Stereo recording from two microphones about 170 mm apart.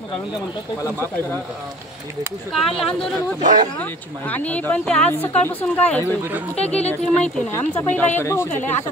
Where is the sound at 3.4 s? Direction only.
45° right (ahead or behind).